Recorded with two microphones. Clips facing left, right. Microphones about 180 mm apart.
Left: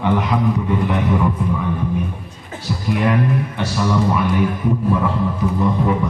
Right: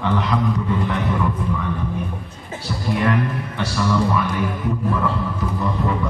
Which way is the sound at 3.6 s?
20° left (ahead or behind).